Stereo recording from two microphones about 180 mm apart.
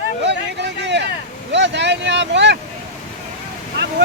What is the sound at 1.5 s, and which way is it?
Speech, 75° right (ahead or behind).